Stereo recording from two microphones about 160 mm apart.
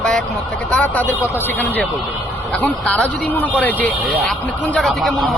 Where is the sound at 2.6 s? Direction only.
10° left (ahead or behind).